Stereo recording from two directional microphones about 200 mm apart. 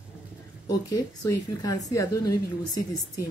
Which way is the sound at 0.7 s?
20° left (ahead or behind).